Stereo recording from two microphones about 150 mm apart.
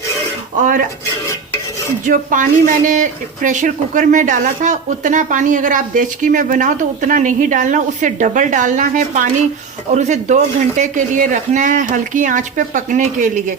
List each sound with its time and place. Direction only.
0.6 s speech: 60° right (ahead or behind)
2.0 s a man's voice: 60° right (ahead or behind)